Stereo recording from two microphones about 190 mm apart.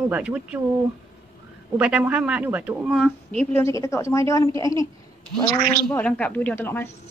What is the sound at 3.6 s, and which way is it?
A woman's voice, 15° left (ahead or behind).